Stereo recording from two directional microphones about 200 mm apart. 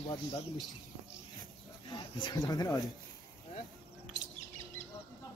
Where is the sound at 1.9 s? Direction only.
20° left (ahead or behind).